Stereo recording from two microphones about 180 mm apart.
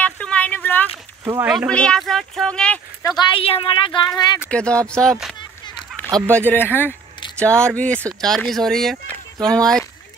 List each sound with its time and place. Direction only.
0.0 s a sound: 5° left (ahead or behind)
1.2 s speech: 15° right (ahead or behind)
1.7 s speech: 5° left (ahead or behind)
3.0 s speech: 20° left (ahead or behind)
4.5 s speech: 5° left (ahead or behind)
6.0 s a sound: 10° left (ahead or behind)
6.3 s speech: 10° left (ahead or behind)